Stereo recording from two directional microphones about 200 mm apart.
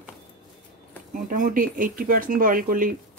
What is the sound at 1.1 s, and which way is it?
Speech, 40° right (ahead or behind).